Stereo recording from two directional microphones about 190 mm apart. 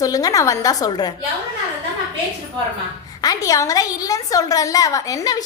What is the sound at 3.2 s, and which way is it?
A woman's voice, 20° left (ahead or behind).